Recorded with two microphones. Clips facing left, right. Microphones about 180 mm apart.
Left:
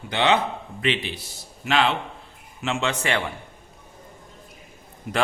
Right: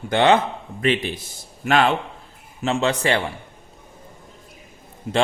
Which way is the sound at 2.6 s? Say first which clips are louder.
Right 5 dB; 35° right (ahead or behind).